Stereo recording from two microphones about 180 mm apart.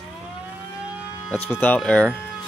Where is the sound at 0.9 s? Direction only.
10° right (ahead or behind).